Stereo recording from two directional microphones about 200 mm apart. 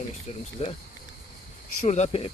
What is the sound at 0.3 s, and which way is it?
Speech, 40° left (ahead or behind).